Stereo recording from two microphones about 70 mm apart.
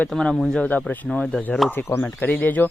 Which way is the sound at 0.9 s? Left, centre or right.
Centre.